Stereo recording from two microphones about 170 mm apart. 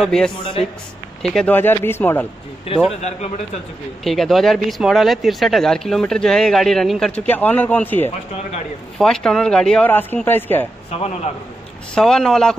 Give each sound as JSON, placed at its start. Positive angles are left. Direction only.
{"t": 0.0, "sound": "speech", "side_deg": 5}
{"t": 2.7, "sound": "a man's voice", "side_deg": 35}
{"t": 4.0, "sound": "speech", "side_deg": 0}
{"t": 10.9, "sound": "a man's voice", "side_deg": 35}
{"t": 11.9, "sound": "speech", "side_deg": 5}